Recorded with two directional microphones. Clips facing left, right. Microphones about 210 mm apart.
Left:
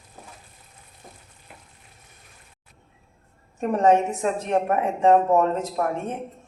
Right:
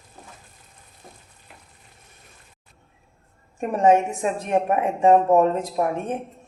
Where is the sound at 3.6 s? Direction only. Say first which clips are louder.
Right 1 dB; 10° right (ahead or behind).